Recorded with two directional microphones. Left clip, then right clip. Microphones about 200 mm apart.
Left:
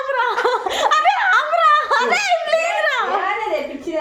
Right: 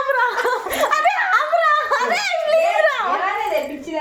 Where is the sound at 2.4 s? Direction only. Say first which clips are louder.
Right 2 dB; 25° left (ahead or behind).